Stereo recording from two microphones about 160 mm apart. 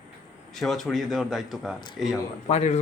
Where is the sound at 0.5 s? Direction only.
Centre (ahead or behind).